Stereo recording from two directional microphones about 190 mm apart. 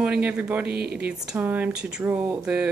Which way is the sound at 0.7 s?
55° right (ahead or behind).